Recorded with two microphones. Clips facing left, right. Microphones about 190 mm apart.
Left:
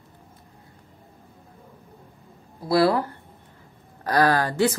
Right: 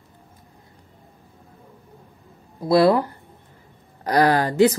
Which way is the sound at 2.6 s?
20° right (ahead or behind).